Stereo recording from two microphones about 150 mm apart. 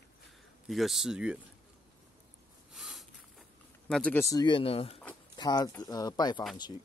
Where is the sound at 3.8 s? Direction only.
10° left (ahead or behind); by 4.9 s 40° left (ahead or behind).